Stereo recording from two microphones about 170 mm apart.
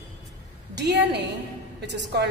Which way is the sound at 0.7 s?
90° right.